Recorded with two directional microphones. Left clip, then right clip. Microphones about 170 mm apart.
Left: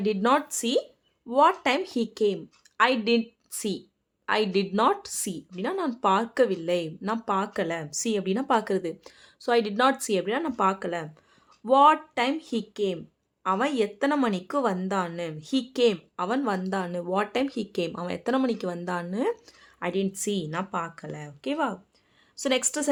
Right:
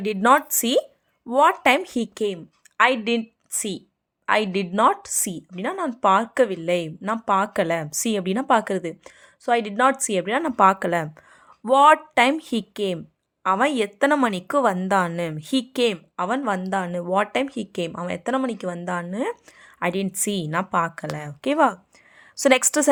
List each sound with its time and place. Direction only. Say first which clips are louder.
0.0 s a woman's voice: right 6 dB; 25° right (ahead or behind); by 22.9 s 40° right (ahead or behind)